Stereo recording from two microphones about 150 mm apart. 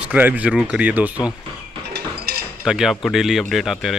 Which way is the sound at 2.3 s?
90° right.